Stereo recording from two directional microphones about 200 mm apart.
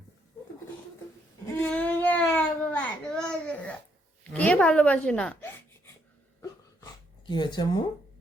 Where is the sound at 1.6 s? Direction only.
5° left (ahead or behind).